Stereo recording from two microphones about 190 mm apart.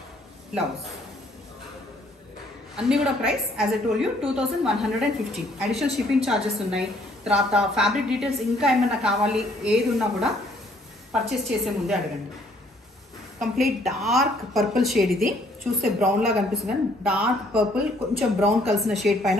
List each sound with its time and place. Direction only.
2.7 s a woman's voice: 5° right (ahead or behind)
13.4 s a woman's voice: centre (ahead or behind)